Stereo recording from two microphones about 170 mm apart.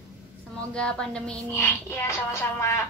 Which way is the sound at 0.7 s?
5° left (ahead or behind).